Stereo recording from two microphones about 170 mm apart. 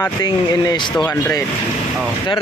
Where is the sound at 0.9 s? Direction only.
5° left (ahead or behind).